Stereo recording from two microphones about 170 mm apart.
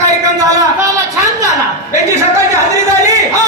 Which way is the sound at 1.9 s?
15° right (ahead or behind).